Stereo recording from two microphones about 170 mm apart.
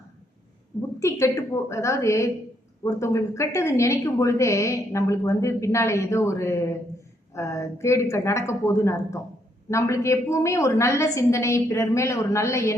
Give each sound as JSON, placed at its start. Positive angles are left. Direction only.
{"t": 0.9, "sound": "speech", "side_deg": 20}